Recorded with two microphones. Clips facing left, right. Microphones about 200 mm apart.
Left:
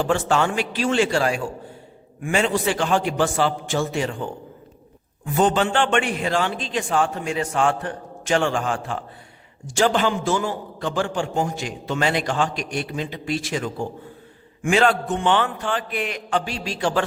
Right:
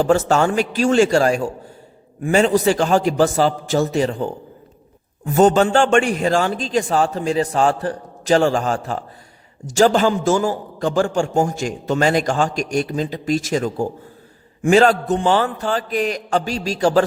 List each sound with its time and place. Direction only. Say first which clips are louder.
0.0 s a man's voice: right 5 dB; 40° right (ahead or behind)